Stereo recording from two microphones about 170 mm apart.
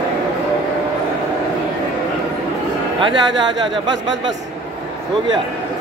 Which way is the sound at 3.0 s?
25° right (ahead or behind).